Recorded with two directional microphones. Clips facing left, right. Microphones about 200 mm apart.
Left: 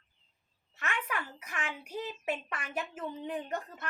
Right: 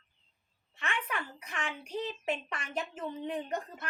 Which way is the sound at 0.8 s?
5° left (ahead or behind).